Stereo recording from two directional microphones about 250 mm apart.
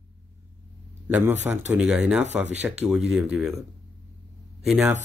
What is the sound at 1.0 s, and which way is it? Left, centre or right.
A man's voice, centre.